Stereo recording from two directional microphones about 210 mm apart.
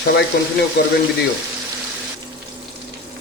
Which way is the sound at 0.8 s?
50° left (ahead or behind).